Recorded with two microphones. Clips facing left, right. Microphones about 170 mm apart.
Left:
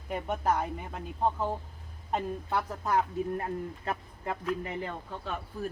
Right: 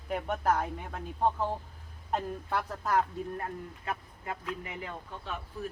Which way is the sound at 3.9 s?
35° left (ahead or behind).